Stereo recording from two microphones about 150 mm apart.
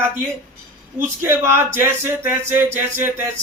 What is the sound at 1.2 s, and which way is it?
Speech, 15° right (ahead or behind).